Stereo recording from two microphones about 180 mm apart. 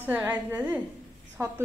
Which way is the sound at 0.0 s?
10° right (ahead or behind).